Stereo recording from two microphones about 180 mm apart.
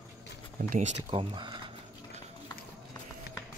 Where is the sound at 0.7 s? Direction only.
40° right (ahead or behind).